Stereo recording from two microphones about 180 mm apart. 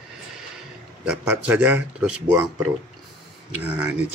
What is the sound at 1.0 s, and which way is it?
Speech, 5° right (ahead or behind).